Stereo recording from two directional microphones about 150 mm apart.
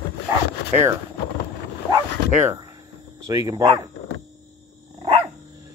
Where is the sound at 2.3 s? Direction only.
15° right (ahead or behind).